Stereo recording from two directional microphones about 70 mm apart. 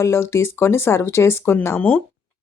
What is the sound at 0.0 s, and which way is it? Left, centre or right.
Speech, left.